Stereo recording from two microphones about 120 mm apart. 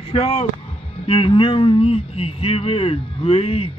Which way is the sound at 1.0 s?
50° left (ahead or behind).